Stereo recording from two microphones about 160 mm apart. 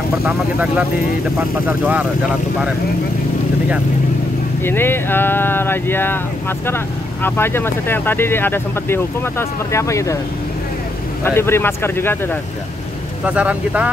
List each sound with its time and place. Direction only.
0.2 s speech: 10° right (ahead or behind)
4.6 s speech: 15° left (ahead or behind)
7.2 s speech: 15° left (ahead or behind)
11.2 s speech: 15° left (ahead or behind)
13.2 s speech: 10° right (ahead or behind)